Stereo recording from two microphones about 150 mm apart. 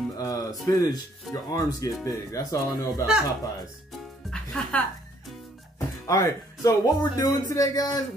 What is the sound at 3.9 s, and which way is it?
Music, 5° left (ahead or behind).